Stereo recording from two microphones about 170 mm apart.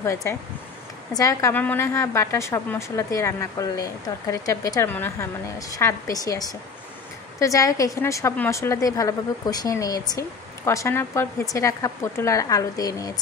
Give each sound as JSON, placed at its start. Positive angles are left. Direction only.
{"t": 0.0, "sound": "a woman's voice", "side_deg": 15}